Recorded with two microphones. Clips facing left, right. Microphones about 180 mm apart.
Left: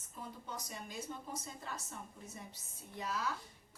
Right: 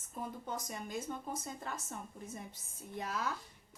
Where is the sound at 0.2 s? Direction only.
50° right (ahead or behind).